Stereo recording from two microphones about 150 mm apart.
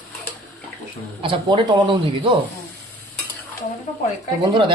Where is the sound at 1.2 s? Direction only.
35° right (ahead or behind).